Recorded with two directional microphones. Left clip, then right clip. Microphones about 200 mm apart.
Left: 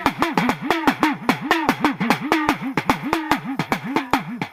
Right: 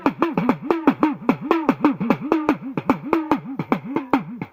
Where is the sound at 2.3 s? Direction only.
25° left (ahead or behind).